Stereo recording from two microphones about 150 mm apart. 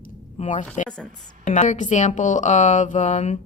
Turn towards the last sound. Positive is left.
turn(degrees=50)  # may be behind; listen again after turning